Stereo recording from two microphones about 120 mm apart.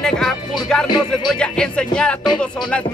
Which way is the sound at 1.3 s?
5° left (ahead or behind).